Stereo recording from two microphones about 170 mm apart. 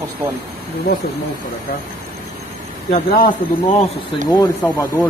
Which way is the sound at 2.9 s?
60° left (ahead or behind).